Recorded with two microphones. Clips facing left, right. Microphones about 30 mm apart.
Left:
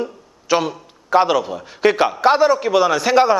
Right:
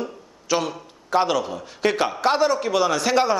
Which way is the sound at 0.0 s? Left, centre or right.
Centre.